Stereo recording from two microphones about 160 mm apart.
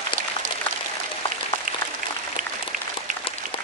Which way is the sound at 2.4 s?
55° right (ahead or behind).